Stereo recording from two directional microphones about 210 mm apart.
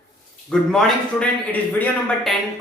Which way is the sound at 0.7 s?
5° left (ahead or behind).